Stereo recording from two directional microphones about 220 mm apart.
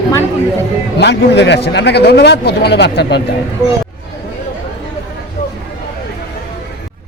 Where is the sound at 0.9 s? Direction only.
50° left (ahead or behind).